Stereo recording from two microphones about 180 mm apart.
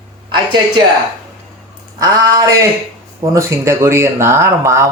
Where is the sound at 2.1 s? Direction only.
20° right (ahead or behind).